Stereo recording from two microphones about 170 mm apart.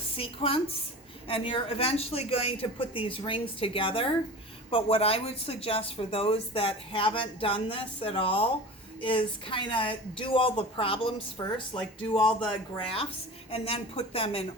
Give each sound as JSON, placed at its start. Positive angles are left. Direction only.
{"t": 0.2, "sound": "a woman's voice", "side_deg": 35}